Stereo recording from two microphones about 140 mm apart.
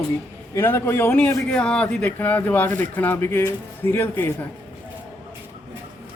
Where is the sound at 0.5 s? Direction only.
20° left (ahead or behind).